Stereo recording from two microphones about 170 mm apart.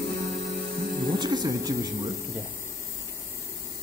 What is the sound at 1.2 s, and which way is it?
Speech, 25° right (ahead or behind).